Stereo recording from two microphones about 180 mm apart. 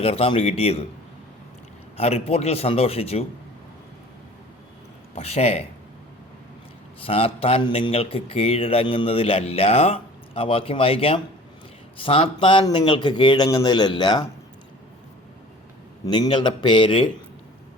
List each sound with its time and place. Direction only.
0.0 s a man's voice: 35° left (ahead or behind)
2.0 s a man's voice: 35° left (ahead or behind)
5.1 s a man's voice: 35° left (ahead or behind)
7.0 s a man's voice: 30° left (ahead or behind)
16.0 s speech: 25° left (ahead or behind)